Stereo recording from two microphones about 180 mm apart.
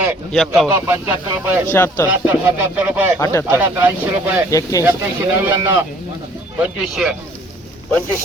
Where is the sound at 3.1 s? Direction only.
15° left (ahead or behind).